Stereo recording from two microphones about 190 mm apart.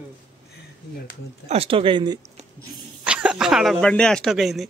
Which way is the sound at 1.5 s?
30° right (ahead or behind).